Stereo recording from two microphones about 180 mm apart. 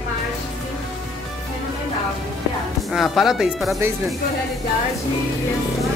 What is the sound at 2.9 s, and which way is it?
Speech, centre (ahead or behind).